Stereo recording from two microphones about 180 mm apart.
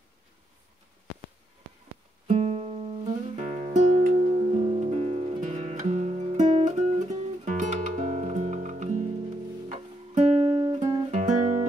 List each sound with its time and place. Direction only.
2.2 s guitar: 30° right (ahead or behind)
3.3 s music: 45° right (ahead or behind)
11.1 s music: 40° right (ahead or behind)